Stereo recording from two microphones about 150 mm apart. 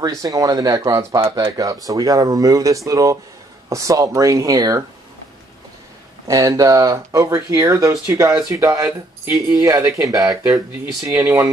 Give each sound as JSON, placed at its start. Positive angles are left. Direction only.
{"t": 0.0, "sound": "speech", "side_deg": -25}
{"t": 6.2, "sound": "speech", "side_deg": -20}